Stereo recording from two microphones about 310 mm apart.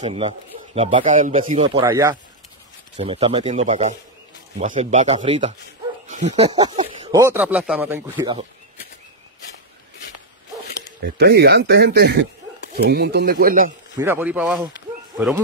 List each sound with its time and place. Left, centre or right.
0.0 s speech: centre
11.0 s speech: right
13.9 s a man's voice: centre